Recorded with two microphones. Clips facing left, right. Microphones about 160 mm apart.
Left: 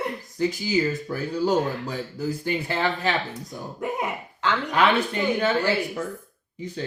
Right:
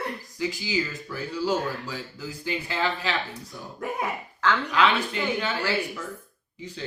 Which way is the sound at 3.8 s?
20° left (ahead or behind).